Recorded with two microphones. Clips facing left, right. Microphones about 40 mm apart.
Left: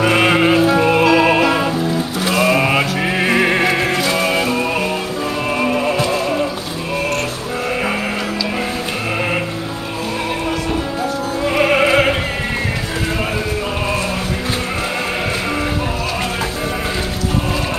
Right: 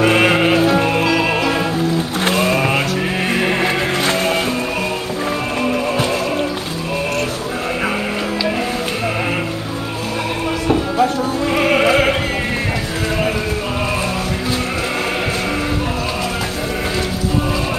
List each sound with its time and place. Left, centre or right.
0.0 s music: centre
4.0 s music: right
11.4 s music: centre